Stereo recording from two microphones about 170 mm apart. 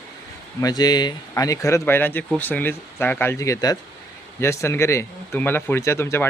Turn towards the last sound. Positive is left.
turn(degrees=15)  # may be behind; listen again after turning